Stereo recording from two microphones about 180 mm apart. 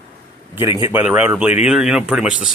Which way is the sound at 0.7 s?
15° right (ahead or behind).